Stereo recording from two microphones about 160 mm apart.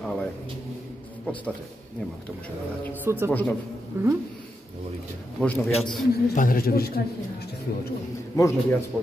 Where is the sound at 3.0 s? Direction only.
15° right (ahead or behind).